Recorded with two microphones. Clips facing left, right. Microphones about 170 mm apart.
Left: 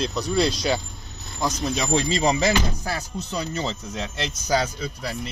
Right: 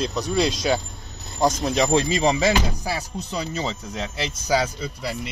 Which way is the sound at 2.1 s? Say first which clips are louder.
Right 1 dB; 5° right (ahead or behind).